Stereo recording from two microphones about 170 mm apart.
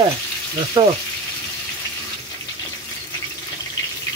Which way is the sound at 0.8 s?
25° right (ahead or behind).